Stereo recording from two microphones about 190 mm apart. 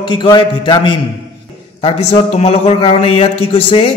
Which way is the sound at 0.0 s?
25° left (ahead or behind).